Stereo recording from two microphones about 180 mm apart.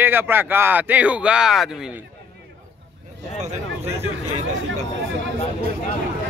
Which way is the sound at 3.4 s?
40° right (ahead or behind).